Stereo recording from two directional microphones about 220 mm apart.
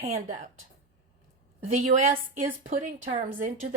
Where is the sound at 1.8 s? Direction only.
40° right (ahead or behind).